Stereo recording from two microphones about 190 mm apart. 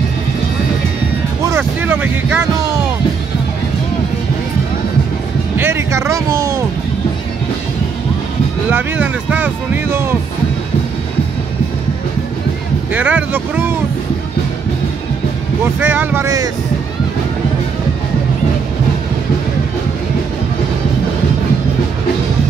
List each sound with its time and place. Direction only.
1.5 s vehicle: 10° right (ahead or behind)
5.6 s speech: 15° right (ahead or behind)
8.6 s speech: 10° right (ahead or behind)
12.9 s speech: 10° right (ahead or behind)
15.6 s speech: 10° right (ahead or behind)